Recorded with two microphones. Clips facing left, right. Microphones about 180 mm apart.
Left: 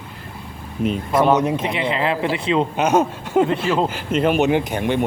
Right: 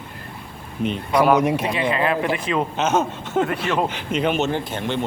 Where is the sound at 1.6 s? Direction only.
20° left (ahead or behind).